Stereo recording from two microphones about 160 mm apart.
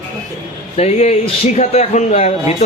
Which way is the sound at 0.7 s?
45° left (ahead or behind).